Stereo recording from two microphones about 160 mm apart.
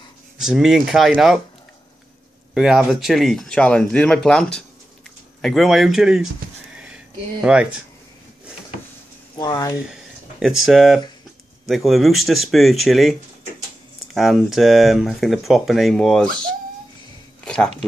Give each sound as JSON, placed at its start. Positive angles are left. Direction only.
{"t": 0.4, "sound": "speech", "side_deg": -5}
{"t": 2.5, "sound": "speech", "side_deg": -5}
{"t": 7.5, "sound": "speech", "side_deg": -5}
{"t": 9.4, "sound": "speech", "side_deg": 20}
{"t": 9.8, "sound": "speech", "side_deg": -5}
{"t": 14.1, "sound": "speech", "side_deg": 0}
{"t": 17.5, "sound": "a sound", "side_deg": 5}